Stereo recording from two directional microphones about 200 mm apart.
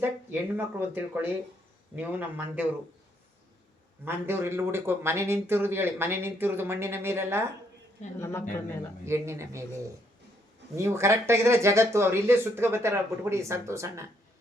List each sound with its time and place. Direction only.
0.0 s a man's voice: 10° right (ahead or behind)
4.0 s a man's voice: 10° right (ahead or behind)
8.2 s speech: 15° left (ahead or behind)
9.0 s a man's voice: 15° right (ahead or behind)
10.8 s a man's voice: 15° right (ahead or behind)